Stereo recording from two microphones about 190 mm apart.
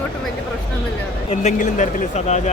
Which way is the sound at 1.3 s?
40° left (ahead or behind).